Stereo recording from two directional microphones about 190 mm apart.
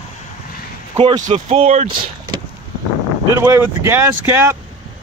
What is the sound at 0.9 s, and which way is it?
Speech, 25° right (ahead or behind).